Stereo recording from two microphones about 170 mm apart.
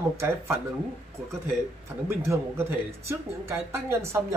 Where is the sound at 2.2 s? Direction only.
15° right (ahead or behind).